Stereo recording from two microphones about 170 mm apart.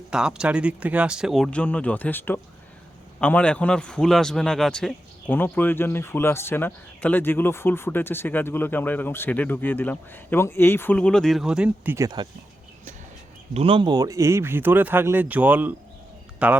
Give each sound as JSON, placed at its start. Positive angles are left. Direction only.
{"t": 0.1, "sound": "a man's voice", "side_deg": -5}
{"t": 11.9, "sound": "speech", "side_deg": -25}
{"t": 13.5, "sound": "speech", "side_deg": -35}